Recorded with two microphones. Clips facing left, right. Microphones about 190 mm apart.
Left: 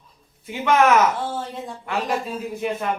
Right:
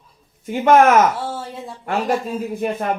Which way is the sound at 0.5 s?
45° right (ahead or behind).